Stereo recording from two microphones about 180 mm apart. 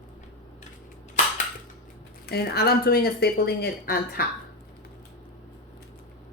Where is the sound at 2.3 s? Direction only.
60° left (ahead or behind).